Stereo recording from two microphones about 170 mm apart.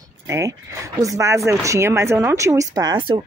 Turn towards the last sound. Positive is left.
turn(degrees=-25)  # may be behind; listen again after turning